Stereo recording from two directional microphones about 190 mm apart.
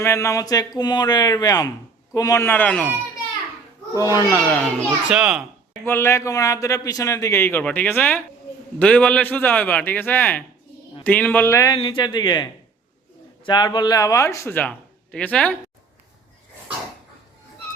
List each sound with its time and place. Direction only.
0.0 s a man's voice: 15° left (ahead or behind)
4.4 s a man's voice: 5° left (ahead or behind)
4.8 s a child's voice: 5° right (ahead or behind)
5.8 s a man's voice: 10° left (ahead or behind)